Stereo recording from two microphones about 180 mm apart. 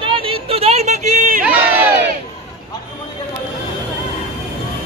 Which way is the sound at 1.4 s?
10° right (ahead or behind).